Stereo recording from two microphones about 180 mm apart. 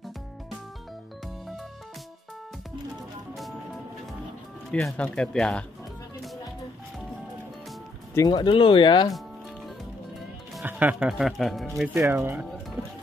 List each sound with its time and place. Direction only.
4.6 s speech: centre (ahead or behind)
8.1 s speech: 20° left (ahead or behind)
10.5 s speech: 10° right (ahead or behind)
12.0 s speech: 15° right (ahead or behind)